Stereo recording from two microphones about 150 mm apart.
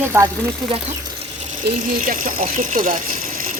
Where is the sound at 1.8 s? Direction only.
65° right (ahead or behind).